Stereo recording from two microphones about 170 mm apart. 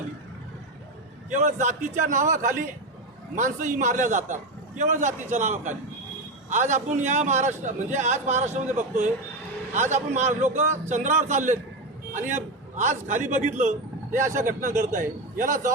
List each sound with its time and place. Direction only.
1.3 s a man's voice: 45° right (ahead or behind)